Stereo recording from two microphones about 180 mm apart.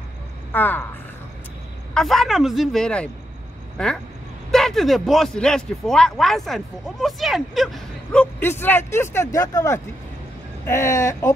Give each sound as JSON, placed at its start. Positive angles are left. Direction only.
{"t": 0.5, "sound": "speech", "side_deg": 10}
{"t": 2.0, "sound": "speech", "side_deg": 0}